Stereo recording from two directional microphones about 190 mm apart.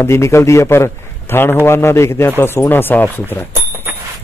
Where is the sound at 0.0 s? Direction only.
15° left (ahead or behind).